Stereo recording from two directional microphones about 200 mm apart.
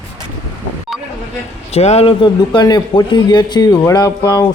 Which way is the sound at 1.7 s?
30° left (ahead or behind).